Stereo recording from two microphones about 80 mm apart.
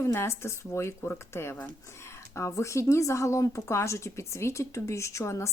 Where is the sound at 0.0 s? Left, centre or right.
Left.